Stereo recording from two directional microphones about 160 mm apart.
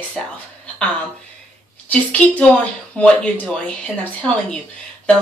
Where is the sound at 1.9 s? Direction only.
5° left (ahead or behind).